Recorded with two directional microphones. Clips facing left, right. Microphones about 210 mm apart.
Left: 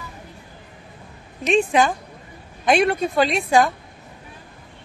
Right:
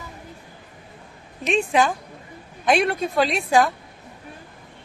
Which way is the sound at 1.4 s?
Centre (ahead or behind).